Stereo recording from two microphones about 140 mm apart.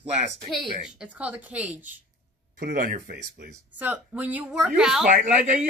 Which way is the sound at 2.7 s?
90° right.